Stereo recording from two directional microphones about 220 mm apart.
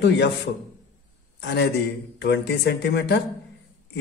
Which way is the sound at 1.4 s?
50° left (ahead or behind).